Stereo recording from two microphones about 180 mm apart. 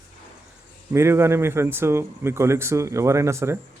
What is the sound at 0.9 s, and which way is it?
Speech, 15° right (ahead or behind).